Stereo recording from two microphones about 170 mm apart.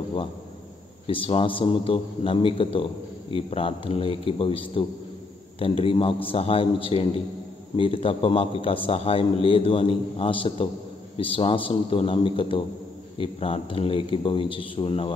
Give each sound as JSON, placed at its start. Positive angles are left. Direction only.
{"t": 1.0, "sound": "a man's voice", "side_deg": 30}